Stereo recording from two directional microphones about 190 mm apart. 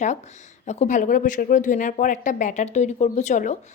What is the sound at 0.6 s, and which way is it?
Speech, 40° left (ahead or behind).